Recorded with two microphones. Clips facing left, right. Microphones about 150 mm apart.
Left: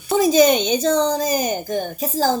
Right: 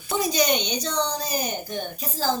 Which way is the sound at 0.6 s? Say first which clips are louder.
Left 9 dB; 90° left.